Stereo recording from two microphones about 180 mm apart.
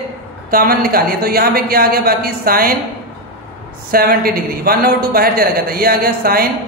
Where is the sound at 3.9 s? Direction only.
55° right (ahead or behind).